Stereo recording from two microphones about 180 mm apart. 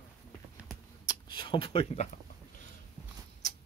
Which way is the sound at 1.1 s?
25° left (ahead or behind).